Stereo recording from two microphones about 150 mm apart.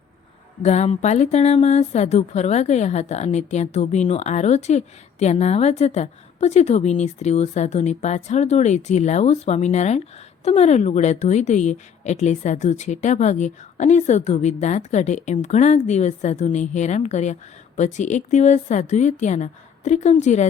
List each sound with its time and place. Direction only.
0.6 s speech: 50° left (ahead or behind)